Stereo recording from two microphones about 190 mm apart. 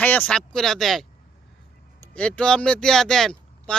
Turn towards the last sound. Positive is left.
turn(degrees=0)  # may be behind; listen again after turning